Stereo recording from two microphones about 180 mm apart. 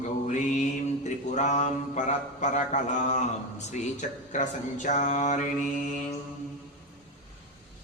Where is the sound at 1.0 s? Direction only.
40° left (ahead or behind).